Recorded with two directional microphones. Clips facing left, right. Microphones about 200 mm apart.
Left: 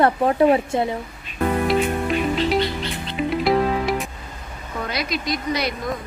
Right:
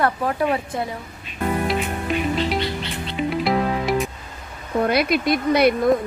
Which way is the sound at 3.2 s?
Centre (ahead or behind).